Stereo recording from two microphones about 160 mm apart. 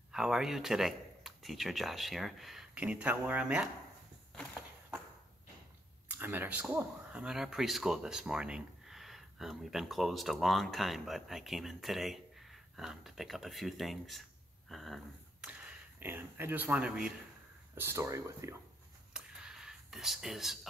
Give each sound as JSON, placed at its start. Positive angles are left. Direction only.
{"t": 0.1, "sound": "speech", "side_deg": -5}
{"t": 4.4, "sound": "a sound", "side_deg": -5}
{"t": 6.0, "sound": "speech", "side_deg": -15}
{"t": 14.7, "sound": "a sound", "side_deg": 0}
{"t": 15.4, "sound": "speech", "side_deg": -10}
{"t": 19.1, "sound": "whispering", "side_deg": -5}